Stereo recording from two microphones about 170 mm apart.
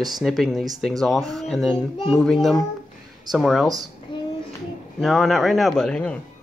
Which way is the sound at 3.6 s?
20° right (ahead or behind).